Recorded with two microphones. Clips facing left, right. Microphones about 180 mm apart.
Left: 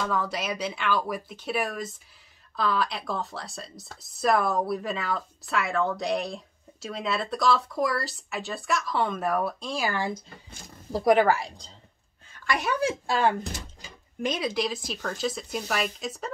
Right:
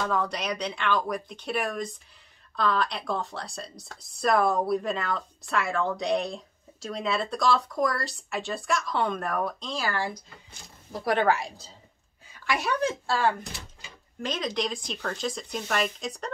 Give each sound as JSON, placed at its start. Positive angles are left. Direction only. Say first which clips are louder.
{"t": 0.0, "sound": "speech", "louder": "even", "side_deg": 0}
{"t": 11.1, "sound": "speech", "louder": "left 2 dB", "side_deg": 5}
{"t": 12.3, "sound": "a sound", "louder": "even", "side_deg": -5}
{"t": 12.8, "sound": "speech", "louder": "left 2 dB", "side_deg": 15}
{"t": 13.5, "sound": "speech", "louder": "left 4 dB", "side_deg": 40}
{"t": 14.2, "sound": "speech", "louder": "left 2 dB", "side_deg": 10}